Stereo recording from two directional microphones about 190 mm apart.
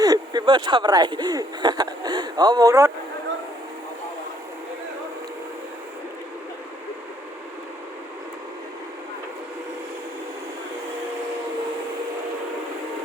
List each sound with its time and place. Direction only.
0.0 s speech: 20° right (ahead or behind)